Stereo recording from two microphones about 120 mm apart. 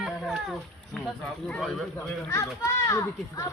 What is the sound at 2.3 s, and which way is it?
A child's voice, 25° left (ahead or behind).